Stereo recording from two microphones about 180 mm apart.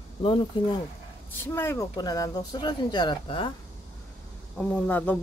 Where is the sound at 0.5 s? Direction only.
25° left (ahead or behind).